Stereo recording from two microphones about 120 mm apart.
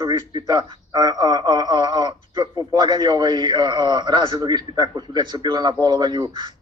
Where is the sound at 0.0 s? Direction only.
35° right (ahead or behind).